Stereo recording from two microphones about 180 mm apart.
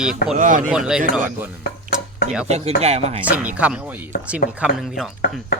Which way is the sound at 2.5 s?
35° right (ahead or behind).